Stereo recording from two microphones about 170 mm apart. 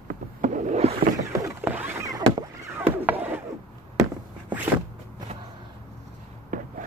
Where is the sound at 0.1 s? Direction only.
50° right (ahead or behind).